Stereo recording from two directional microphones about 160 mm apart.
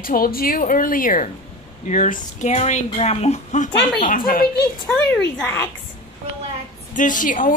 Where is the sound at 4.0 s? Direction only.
60° left (ahead or behind).